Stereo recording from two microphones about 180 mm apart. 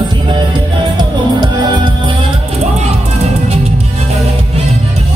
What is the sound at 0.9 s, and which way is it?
Music, 25° right (ahead or behind).